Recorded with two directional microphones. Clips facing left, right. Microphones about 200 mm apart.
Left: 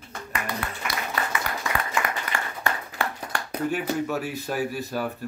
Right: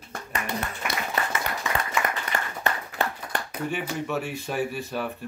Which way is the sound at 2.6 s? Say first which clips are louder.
Right 1 dB; 20° right (ahead or behind).